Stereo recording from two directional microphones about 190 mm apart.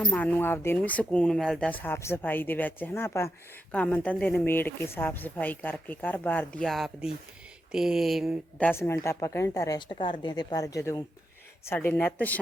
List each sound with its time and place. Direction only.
0.0 s speech: 5° left (ahead or behind)